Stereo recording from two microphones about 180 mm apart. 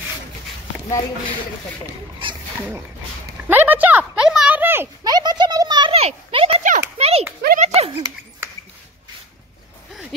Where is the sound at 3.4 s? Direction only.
10° right (ahead or behind); by 7.9 s 35° right (ahead or behind).